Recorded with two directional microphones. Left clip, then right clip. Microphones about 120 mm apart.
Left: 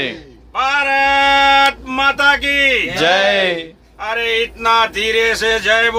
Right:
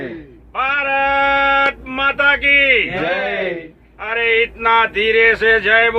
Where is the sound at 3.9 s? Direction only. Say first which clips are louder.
Right 1 dB; 30° left (ahead or behind).